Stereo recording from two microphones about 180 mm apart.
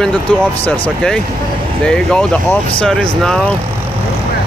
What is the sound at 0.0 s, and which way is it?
Speech, 5° left (ahead or behind).